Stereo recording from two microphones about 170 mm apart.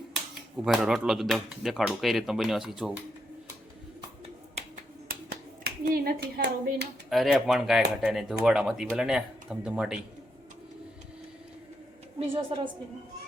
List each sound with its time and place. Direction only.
0.1 s speech: centre (ahead or behind)
5.0 s hands: 65° right (ahead or behind)
7.1 s speech: centre (ahead or behind)
12.2 s a woman's voice: 30° right (ahead or behind)